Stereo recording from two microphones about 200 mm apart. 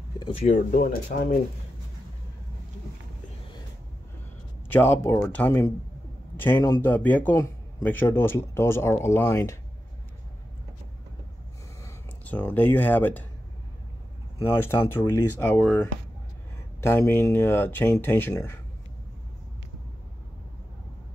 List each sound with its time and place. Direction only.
0.2 s speech: 30° left (ahead or behind)
1.1 s speech: 50° left (ahead or behind)
4.6 s a man's voice: 10° left (ahead or behind)
11.8 s speech: 10° left (ahead or behind)
14.4 s a man's voice: 10° left (ahead or behind)